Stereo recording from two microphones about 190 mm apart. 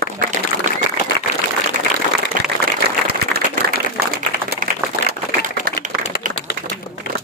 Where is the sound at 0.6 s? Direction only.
40° right (ahead or behind).